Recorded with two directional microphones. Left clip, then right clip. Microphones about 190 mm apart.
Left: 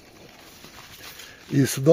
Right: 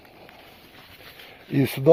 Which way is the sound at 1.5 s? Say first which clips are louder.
Right 1 dB; 30° left (ahead or behind).